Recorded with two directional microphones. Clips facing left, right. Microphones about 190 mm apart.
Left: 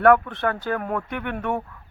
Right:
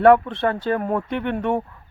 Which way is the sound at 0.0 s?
25° right (ahead or behind).